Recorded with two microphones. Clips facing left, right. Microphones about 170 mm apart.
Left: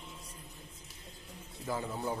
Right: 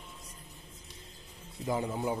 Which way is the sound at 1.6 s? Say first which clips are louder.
Right 4 dB; 15° right (ahead or behind).